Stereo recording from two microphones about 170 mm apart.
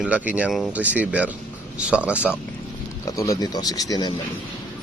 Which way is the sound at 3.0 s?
20° left (ahead or behind).